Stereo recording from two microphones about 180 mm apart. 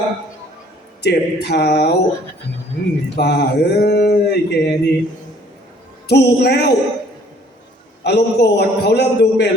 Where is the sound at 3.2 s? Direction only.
65° left (ahead or behind).